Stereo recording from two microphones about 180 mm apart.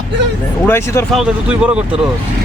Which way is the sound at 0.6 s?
10° left (ahead or behind).